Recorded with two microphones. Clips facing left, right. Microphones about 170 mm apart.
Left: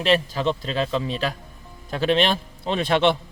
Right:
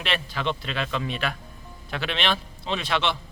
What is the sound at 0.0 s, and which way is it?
A man's voice, 40° left (ahead or behind).